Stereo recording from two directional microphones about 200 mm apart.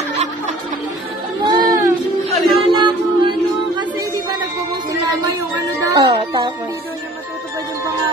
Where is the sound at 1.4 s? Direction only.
20° right (ahead or behind).